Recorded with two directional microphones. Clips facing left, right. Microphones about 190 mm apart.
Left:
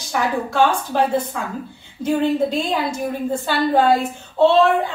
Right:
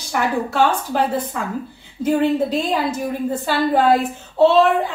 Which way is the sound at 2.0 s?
5° right (ahead or behind).